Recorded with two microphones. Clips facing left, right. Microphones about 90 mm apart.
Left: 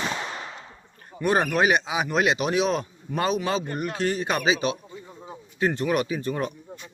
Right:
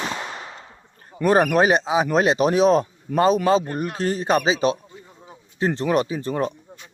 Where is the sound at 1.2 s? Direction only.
35° right (ahead or behind).